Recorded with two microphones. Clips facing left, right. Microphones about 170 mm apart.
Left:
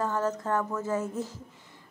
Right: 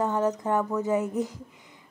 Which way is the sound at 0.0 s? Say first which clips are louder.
Right 3 dB; 15° right (ahead or behind).